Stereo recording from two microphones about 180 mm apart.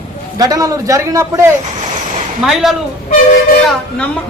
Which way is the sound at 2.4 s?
Centre (ahead or behind).